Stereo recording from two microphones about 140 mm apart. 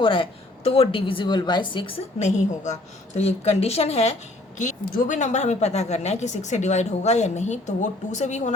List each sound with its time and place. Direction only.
0.0 s a woman's voice: 40° left (ahead or behind); by 8.5 s 55° left (ahead or behind)